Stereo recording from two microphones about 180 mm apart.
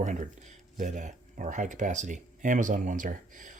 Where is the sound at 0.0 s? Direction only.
45° right (ahead or behind).